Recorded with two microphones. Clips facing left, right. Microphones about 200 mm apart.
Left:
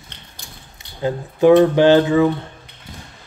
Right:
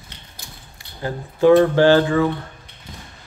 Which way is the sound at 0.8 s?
20° left (ahead or behind).